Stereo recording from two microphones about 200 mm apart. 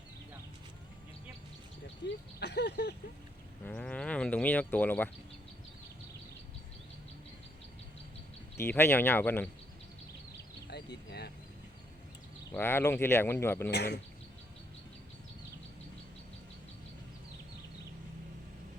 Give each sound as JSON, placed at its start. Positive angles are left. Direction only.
{"t": 2.0, "sound": "a sound", "side_deg": 60}
{"t": 3.7, "sound": "speech", "side_deg": 5}
{"t": 8.5, "sound": "speech", "side_deg": 10}
{"t": 10.7, "sound": "speech", "side_deg": 55}
{"t": 12.5, "sound": "speech", "side_deg": 10}
{"t": 13.7, "sound": "a sound", "side_deg": 55}